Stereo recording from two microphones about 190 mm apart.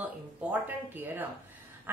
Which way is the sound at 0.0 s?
10° right (ahead or behind).